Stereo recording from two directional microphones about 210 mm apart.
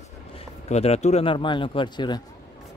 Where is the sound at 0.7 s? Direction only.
30° left (ahead or behind).